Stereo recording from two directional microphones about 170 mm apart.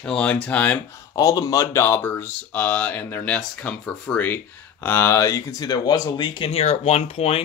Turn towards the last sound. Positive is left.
turn(degrees=35)  # may be behind; listen again after turning